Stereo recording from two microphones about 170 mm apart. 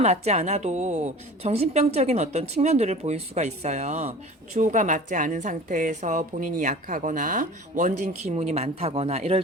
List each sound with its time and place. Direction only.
0.0 s a woman's voice: 40° right (ahead or behind)